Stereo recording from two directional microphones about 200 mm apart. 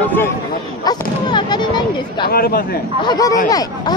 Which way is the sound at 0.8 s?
20° left (ahead or behind).